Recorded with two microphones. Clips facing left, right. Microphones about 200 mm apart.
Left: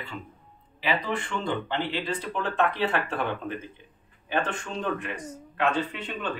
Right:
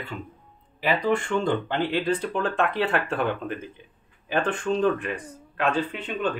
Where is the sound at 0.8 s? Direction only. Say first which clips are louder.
Right 5 dB; 45° right (ahead or behind).